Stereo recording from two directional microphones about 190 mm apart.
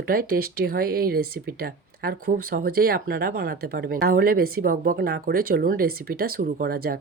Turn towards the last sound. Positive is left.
turn(degrees=-50)  # may be behind; listen again after turning